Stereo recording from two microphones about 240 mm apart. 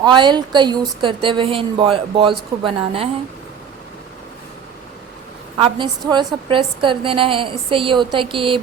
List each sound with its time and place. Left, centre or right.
0.0 s a woman's voice: centre
5.5 s a woman's voice: centre